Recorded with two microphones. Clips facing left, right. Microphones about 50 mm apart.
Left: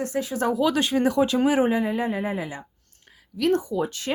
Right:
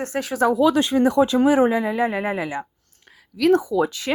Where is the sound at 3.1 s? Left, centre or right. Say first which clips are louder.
Right 4 dB; right.